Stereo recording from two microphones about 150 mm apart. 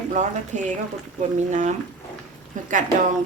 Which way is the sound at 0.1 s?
55° right (ahead or behind).